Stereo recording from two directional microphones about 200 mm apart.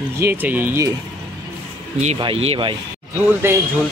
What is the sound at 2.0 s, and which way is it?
Speech, 30° right (ahead or behind).